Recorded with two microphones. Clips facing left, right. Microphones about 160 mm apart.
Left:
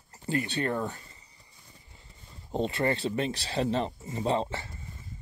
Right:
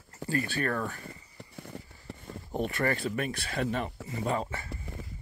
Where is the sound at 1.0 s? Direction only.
70° right (ahead or behind).